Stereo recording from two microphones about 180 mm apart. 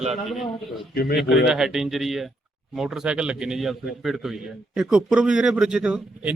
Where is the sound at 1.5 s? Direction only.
Centre (ahead or behind).